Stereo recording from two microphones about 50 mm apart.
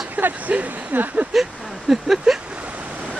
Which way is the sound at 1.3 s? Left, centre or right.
Centre.